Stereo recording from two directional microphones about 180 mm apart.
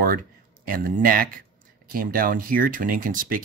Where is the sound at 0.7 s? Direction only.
55° right (ahead or behind).